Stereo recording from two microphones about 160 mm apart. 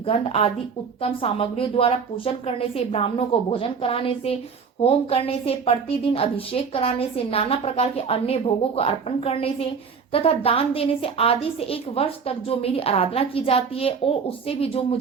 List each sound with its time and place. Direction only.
0.0 s a woman's voice: 40° left (ahead or behind)